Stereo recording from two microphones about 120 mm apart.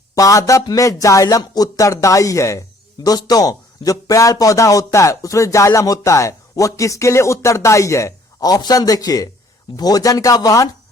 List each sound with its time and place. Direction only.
0.2 s speech: 25° left (ahead or behind)